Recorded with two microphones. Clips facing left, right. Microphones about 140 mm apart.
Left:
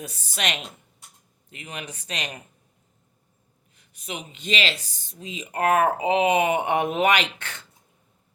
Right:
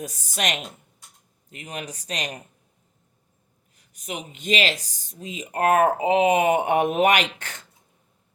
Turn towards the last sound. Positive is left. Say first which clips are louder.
# right 1 dB
turn(degrees=-40)  # may be behind; listen again after turning